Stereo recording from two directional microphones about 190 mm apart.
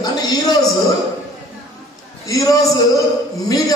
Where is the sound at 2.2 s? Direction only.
15° left (ahead or behind).